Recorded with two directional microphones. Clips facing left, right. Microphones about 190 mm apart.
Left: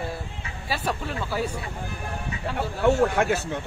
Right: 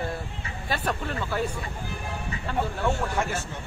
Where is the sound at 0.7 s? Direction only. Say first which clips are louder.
Even; 10° left (ahead or behind).